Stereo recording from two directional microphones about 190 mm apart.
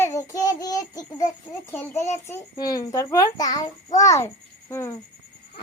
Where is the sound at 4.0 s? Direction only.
15° left (ahead or behind).